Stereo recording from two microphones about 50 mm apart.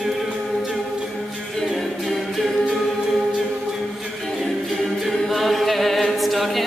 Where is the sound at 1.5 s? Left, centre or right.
Centre.